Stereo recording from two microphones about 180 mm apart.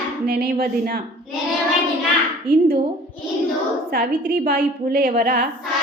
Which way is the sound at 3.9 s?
55° right (ahead or behind).